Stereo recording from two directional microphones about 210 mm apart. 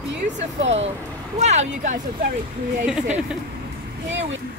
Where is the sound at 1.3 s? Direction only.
35° right (ahead or behind).